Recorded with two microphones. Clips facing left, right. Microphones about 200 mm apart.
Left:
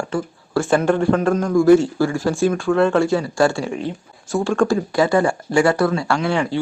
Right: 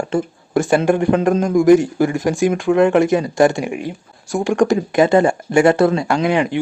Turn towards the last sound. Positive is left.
turn(degrees=-15)  # may be behind; listen again after turning